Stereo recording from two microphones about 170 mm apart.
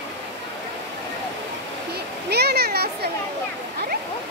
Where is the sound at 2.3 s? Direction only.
70° right (ahead or behind).